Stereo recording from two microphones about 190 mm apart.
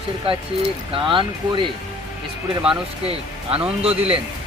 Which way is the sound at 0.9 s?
25° right (ahead or behind).